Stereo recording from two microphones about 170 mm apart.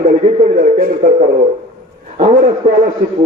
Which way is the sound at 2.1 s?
50° right (ahead or behind).